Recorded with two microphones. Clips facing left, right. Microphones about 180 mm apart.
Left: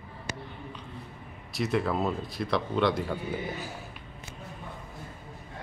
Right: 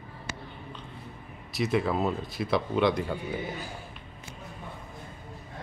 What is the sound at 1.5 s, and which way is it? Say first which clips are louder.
Speech: right 1 dB; centre (ahead or behind).